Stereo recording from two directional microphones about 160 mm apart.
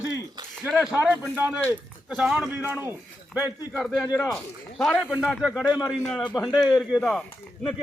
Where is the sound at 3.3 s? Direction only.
Centre (ahead or behind).